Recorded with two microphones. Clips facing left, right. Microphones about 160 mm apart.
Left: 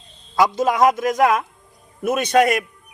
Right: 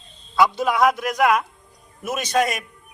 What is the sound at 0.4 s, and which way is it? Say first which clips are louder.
Speech: left 2 dB; 40° left (ahead or behind).